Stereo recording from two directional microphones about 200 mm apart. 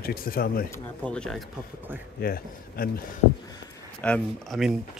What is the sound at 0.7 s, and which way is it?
Speech, 5° left (ahead or behind).